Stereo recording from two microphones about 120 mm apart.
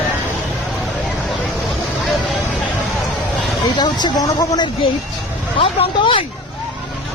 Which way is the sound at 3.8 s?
35° left (ahead or behind).